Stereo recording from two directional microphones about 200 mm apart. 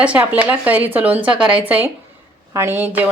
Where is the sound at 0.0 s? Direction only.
5° right (ahead or behind).